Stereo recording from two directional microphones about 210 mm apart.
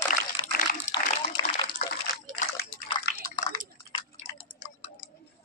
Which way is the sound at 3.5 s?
20° left (ahead or behind).